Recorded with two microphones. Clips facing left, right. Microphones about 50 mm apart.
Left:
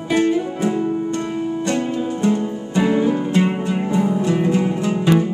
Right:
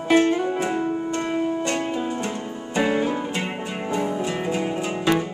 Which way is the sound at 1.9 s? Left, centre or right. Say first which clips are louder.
Left 7 dB; centre.